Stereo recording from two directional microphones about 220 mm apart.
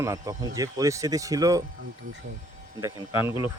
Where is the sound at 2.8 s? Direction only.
10° right (ahead or behind).